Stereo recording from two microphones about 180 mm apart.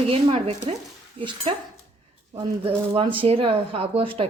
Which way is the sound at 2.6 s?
30° right (ahead or behind).